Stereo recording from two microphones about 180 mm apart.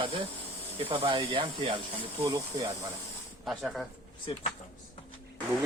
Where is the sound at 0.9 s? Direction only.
30° right (ahead or behind).